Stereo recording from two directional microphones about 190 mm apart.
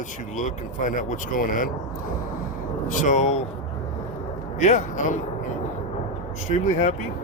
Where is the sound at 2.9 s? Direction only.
40° left (ahead or behind).